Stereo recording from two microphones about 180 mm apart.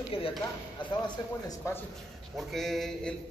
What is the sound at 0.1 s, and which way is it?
Speech, 30° left (ahead or behind).